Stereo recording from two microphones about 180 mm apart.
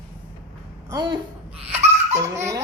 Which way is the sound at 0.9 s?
25° right (ahead or behind).